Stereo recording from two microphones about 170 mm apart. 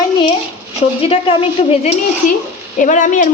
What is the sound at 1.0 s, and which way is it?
Speech, 35° left (ahead or behind).